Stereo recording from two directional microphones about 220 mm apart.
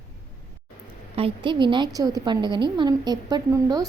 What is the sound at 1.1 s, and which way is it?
A woman's voice, 25° right (ahead or behind).